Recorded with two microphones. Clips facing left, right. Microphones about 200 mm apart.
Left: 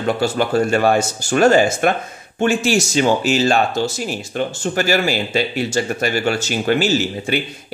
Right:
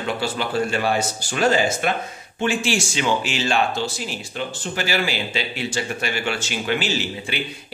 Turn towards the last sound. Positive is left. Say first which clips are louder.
# left 7 dB
turn(degrees=45)  # may be behind; listen again after turning